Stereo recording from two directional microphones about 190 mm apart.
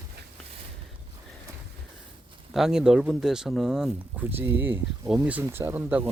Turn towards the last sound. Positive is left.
turn(degrees=-10)  # may be behind; listen again after turning